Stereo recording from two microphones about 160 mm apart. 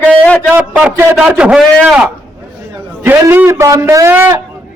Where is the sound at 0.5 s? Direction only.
10° right (ahead or behind).